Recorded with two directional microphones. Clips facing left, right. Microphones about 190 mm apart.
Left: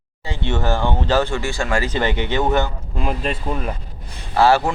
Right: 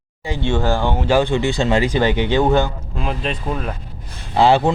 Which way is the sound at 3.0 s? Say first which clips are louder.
Left 1 dB; 5° left (ahead or behind).